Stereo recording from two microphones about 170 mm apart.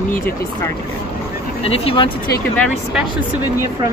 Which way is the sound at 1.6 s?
35° left (ahead or behind).